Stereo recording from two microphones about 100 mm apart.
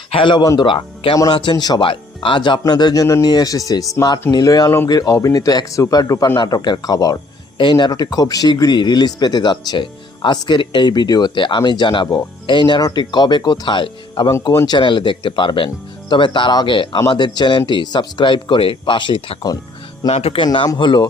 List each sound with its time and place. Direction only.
0.1 s speech: 55° left (ahead or behind)
1.8 s speech: 60° left (ahead or behind); by 7.2 s 40° left (ahead or behind)
7.6 s speech: 50° left (ahead or behind)
20.1 s speech: 85° left
20.4 s speech: 55° left (ahead or behind)